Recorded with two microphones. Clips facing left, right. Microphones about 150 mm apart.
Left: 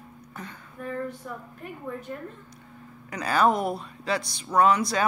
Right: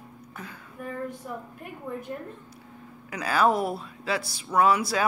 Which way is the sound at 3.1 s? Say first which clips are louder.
Left 1 dB; 5° right (ahead or behind).